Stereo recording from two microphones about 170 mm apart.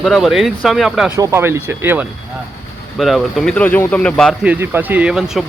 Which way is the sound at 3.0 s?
Centre (ahead or behind).